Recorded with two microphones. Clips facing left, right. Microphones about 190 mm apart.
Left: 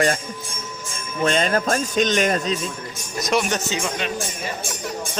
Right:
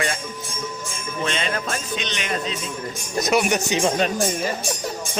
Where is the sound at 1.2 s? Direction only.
45° left (ahead or behind).